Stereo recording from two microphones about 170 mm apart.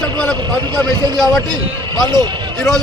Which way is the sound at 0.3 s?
25° right (ahead or behind).